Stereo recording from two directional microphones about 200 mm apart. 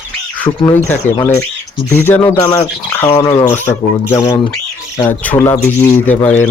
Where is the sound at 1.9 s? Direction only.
10° left (ahead or behind).